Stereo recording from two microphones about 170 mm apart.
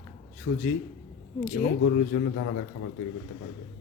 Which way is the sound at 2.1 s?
90° left.